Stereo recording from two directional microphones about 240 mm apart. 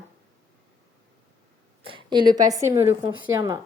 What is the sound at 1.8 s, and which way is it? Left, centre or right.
A woman's voice, centre.